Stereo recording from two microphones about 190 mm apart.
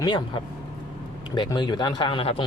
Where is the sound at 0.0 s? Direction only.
25° left (ahead or behind).